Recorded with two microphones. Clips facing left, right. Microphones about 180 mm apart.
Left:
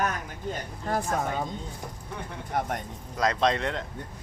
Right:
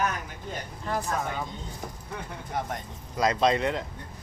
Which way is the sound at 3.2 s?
5° right (ahead or behind).